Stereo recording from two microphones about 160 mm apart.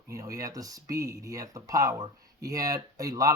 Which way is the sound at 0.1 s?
20° right (ahead or behind).